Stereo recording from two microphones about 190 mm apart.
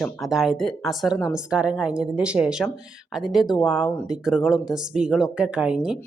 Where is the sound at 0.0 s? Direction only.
Centre (ahead or behind).